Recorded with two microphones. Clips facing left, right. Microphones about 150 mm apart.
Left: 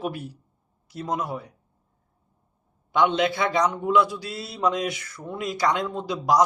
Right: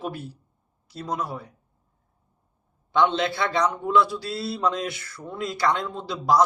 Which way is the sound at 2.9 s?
15° left (ahead or behind).